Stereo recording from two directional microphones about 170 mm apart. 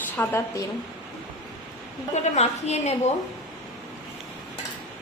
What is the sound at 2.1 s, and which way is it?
Speech, 40° left (ahead or behind).